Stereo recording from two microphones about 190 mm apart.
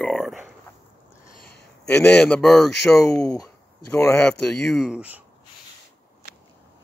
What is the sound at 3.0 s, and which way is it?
Speech, 15° left (ahead or behind).